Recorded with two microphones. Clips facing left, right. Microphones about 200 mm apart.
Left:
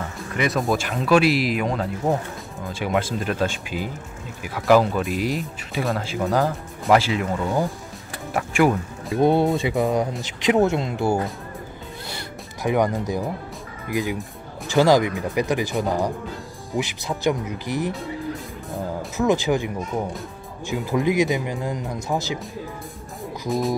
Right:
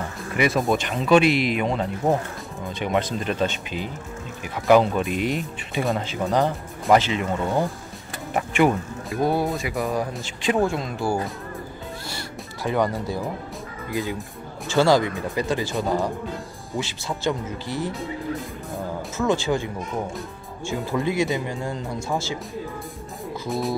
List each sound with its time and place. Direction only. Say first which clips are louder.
0.4 s speech: right 1 dB; centre (ahead or behind)
9.1 s speech: left 5 dB; 25° left (ahead or behind)
12.6 s speech: left 2 dB; 15° left (ahead or behind)
17.9 s music: right 1 dB; centre (ahead or behind)
19.1 s speech: left 2 dB; 15° left (ahead or behind)
23.5 s speech: left 3 dB; centre (ahead or behind)